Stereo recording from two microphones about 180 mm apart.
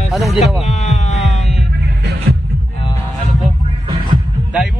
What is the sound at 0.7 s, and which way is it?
Hum, 40° left (ahead or behind).